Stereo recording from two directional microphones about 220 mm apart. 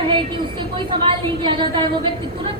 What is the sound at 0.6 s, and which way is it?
A woman's voice, 20° right (ahead or behind).